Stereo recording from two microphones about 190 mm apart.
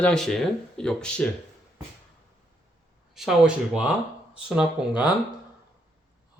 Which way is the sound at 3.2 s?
5° right (ahead or behind).